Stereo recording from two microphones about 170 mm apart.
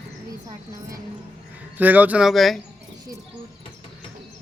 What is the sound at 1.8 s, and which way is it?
Speech, 10° right (ahead or behind).